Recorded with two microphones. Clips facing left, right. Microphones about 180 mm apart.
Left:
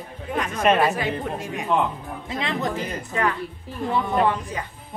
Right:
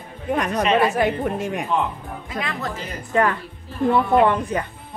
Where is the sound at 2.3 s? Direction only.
20° left (ahead or behind).